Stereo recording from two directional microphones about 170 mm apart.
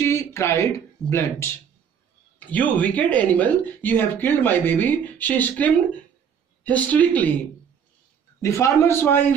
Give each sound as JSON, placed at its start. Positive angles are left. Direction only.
{"t": 0.0, "sound": "speech", "side_deg": 15}
{"t": 8.4, "sound": "speech", "side_deg": 15}